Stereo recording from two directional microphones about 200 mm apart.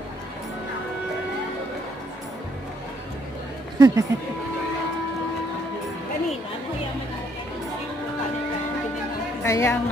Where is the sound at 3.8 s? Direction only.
15° right (ahead or behind).